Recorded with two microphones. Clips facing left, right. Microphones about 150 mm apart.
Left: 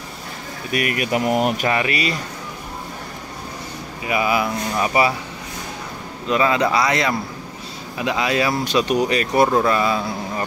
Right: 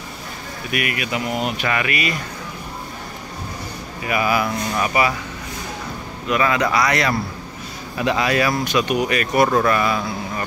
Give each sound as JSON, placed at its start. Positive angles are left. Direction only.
{"t": 0.7, "sound": "speech", "side_deg": 40}
{"t": 1.7, "sound": "speech", "side_deg": 30}
{"t": 4.0, "sound": "speech", "side_deg": 20}
{"t": 6.2, "sound": "speech", "side_deg": 25}